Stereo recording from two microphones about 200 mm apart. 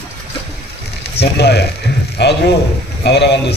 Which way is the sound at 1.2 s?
55° left (ahead or behind).